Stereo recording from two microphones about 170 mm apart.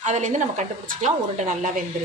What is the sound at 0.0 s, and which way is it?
A woman's voice, 45° right (ahead or behind).